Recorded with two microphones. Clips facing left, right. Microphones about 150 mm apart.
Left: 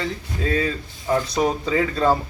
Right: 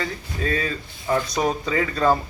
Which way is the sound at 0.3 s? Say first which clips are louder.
Left 2 dB; 20° left (ahead or behind).